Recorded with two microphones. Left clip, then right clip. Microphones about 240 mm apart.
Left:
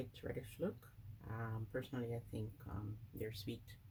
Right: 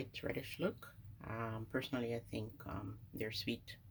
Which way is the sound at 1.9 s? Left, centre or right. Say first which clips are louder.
Right 5 dB; centre.